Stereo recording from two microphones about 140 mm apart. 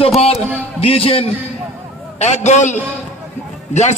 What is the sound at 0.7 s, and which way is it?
A man's voice, 45° left (ahead or behind).